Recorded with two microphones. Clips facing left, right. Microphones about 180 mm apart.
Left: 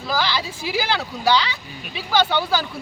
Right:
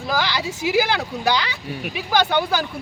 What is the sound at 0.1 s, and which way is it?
Speech, 15° right (ahead or behind).